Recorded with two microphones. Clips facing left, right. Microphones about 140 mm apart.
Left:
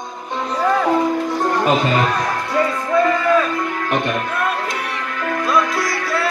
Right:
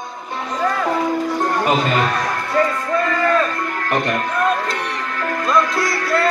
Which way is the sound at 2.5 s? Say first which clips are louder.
Left 1 dB; 10° left (ahead or behind).